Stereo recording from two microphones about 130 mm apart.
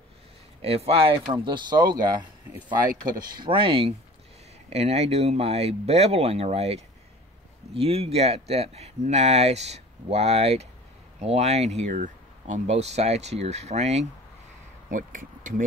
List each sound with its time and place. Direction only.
0.6 s speech: 50° right (ahead or behind); by 2.2 s 30° right (ahead or behind)
3.3 s speech: 40° right (ahead or behind)
4.6 s speech: 55° right (ahead or behind)
14.9 s speech: 90° right